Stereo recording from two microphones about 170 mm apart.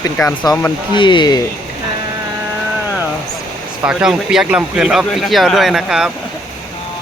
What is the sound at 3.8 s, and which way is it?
Speech, 5° right (ahead or behind).